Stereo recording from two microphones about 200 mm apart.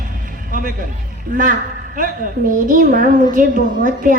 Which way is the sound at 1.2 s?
40° right (ahead or behind).